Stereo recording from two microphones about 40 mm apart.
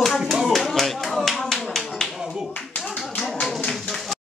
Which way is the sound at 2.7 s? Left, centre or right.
Left.